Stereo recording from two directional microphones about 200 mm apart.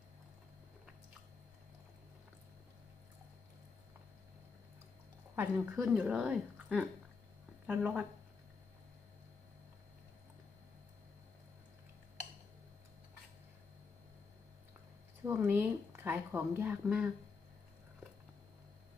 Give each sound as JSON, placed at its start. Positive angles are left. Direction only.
{"t": 5.4, "sound": "a woman's voice", "side_deg": -5}
{"t": 15.2, "sound": "speech", "side_deg": -10}